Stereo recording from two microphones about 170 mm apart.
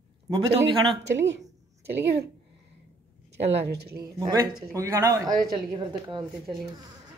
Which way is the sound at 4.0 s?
20° right (ahead or behind).